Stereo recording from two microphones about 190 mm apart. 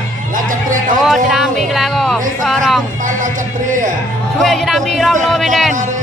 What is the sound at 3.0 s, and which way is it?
Music, 45° right (ahead or behind).